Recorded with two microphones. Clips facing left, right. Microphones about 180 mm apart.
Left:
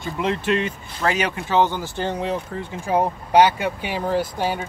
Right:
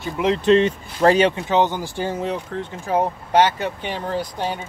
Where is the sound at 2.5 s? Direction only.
10° left (ahead or behind).